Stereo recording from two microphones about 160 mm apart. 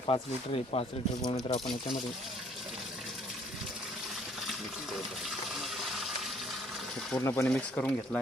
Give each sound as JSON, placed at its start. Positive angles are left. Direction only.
{"t": 0.1, "sound": "speech", "side_deg": 35}
{"t": 5.7, "sound": "coin", "side_deg": 0}
{"t": 7.1, "sound": "speech", "side_deg": 15}